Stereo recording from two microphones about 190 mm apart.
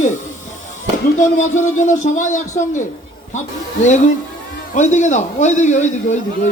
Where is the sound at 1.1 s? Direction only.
40° left (ahead or behind).